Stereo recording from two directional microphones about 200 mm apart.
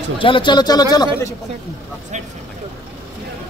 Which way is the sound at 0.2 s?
25° left (ahead or behind).